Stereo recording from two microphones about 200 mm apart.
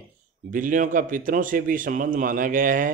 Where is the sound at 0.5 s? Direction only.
40° right (ahead or behind).